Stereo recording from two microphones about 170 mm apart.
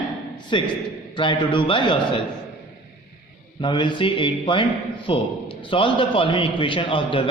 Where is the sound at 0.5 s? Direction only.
30° left (ahead or behind).